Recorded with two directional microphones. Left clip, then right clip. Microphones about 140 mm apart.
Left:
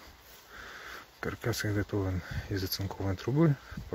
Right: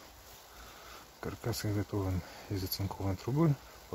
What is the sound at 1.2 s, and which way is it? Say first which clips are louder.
Speech: left 5 dB; 5° left (ahead or behind).